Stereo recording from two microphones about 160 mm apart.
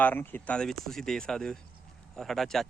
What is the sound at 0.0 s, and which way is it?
Speech, 10° left (ahead or behind).